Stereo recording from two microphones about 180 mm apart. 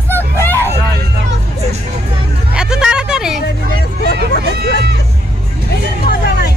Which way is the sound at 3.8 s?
65° left (ahead or behind).